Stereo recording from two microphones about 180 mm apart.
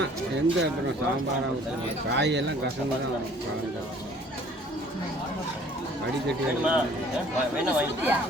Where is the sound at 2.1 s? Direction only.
75° right (ahead or behind).